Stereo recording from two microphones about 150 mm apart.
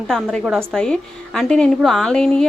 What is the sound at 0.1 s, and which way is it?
A woman's voice, 5° left (ahead or behind).